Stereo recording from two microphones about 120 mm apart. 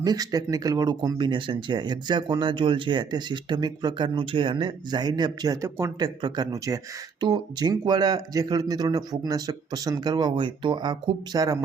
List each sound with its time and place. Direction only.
0.0 s speech: 35° right (ahead or behind)
5.6 s speech: 25° right (ahead or behind)
6.0 s speech: 35° right (ahead or behind)